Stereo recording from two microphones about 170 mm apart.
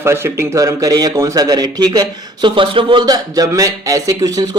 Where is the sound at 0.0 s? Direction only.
15° right (ahead or behind).